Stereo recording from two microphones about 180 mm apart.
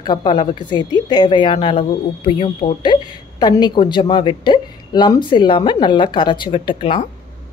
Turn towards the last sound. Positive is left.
turn(degrees=30)  # may be behind; listen again after turning